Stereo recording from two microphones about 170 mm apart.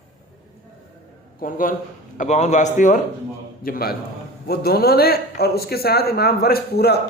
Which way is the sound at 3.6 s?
60° left (ahead or behind).